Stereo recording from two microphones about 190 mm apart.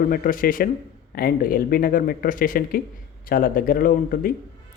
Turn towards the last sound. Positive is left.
turn(degrees=50)  # may be behind; listen again after turning